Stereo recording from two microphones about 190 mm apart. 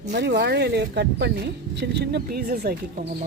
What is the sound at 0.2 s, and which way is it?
A woman's voice, 60° right (ahead or behind).